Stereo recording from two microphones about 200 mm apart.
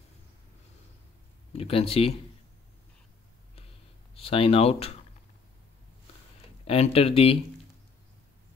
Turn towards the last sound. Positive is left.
turn(degrees=30)  # may be behind; listen again after turning